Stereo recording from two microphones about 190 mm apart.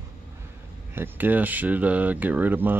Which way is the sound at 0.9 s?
10° right (ahead or behind).